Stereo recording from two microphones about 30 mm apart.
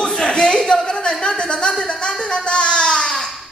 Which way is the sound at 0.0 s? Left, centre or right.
Left.